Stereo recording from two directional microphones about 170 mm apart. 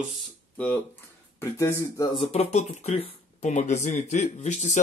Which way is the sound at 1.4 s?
15° left (ahead or behind).